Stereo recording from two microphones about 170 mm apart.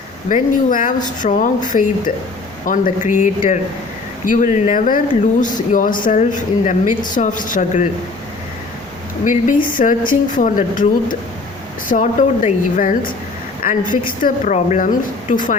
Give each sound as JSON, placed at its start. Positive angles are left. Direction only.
{"t": 0.3, "sound": "speech", "side_deg": 50}
{"t": 9.2, "sound": "speech", "side_deg": 50}